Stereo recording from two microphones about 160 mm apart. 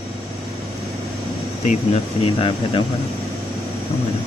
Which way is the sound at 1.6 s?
50° left (ahead or behind).